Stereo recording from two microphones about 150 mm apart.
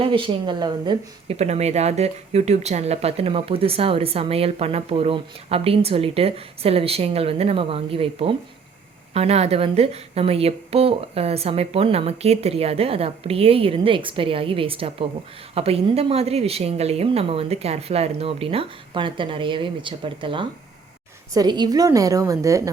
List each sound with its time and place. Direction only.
0.0 s speech: 35° right (ahead or behind)
1.4 s a woman's voice: 45° right (ahead or behind); by 22.7 s 20° right (ahead or behind)